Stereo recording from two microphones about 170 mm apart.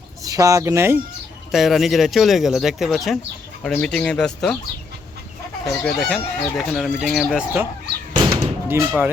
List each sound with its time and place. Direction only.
0.3 s speech: 20° right (ahead or behind)
1.5 s speech: centre (ahead or behind)
5.6 s speech: centre (ahead or behind)
8.1 s door: 25° right (ahead or behind)
8.6 s speech: 10° right (ahead or behind)